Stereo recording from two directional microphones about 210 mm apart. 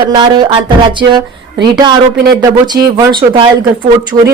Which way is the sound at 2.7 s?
50° right (ahead or behind).